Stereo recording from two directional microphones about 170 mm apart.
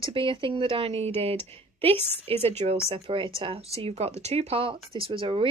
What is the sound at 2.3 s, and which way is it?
Speech, 35° right (ahead or behind).